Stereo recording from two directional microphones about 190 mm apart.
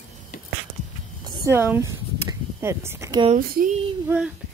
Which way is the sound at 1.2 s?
20° right (ahead or behind).